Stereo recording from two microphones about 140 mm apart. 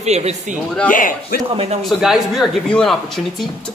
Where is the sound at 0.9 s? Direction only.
75° left (ahead or behind).